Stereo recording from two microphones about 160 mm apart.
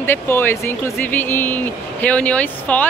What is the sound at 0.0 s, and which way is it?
A woman's voice, 15° left (ahead or behind).